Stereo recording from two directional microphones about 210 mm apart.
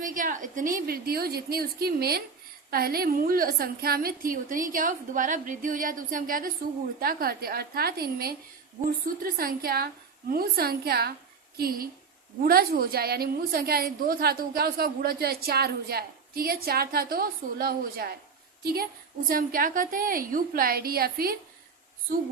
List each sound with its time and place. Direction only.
0.0 s a woman's voice: 40° right (ahead or behind)